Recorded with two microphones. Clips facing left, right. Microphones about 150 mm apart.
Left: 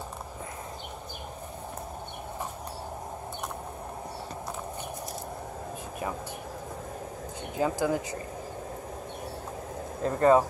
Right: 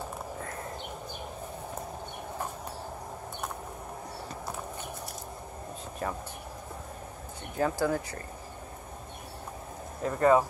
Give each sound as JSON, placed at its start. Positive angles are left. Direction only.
{"t": 7.5, "sound": "speech", "side_deg": 15}
{"t": 10.0, "sound": "speech", "side_deg": 25}